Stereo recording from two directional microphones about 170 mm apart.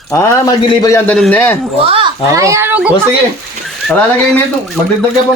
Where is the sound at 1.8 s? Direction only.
35° right (ahead or behind).